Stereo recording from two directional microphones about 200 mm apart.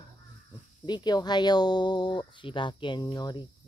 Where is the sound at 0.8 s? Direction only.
20° left (ahead or behind).